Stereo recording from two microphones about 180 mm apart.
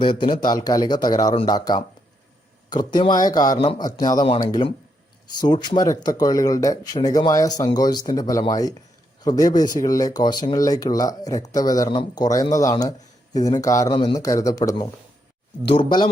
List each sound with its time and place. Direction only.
0.0 s speech: 25° left (ahead or behind)
15.6 s speech: 30° left (ahead or behind)